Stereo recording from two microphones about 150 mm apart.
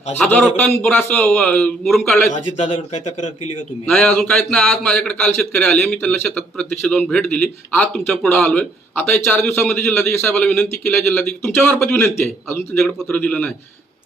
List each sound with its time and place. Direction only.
0.2 s a man's voice: 10° left (ahead or behind)
2.3 s speech: 50° left (ahead or behind)
3.8 s a man's voice: 10° left (ahead or behind)
12.8 s a man's voice: 5° left (ahead or behind)